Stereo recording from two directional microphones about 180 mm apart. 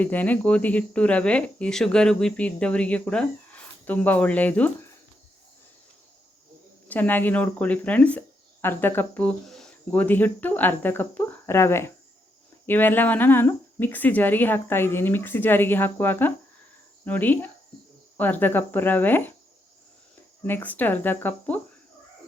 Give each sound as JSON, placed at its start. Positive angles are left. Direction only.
{"t": 0.0, "sound": "speech", "side_deg": 10}
{"t": 6.8, "sound": "speech", "side_deg": 10}
{"t": 20.5, "sound": "speech", "side_deg": 10}